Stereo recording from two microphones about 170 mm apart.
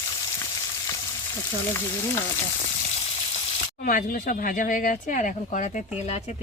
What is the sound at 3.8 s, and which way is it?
Speech, 55° left (ahead or behind).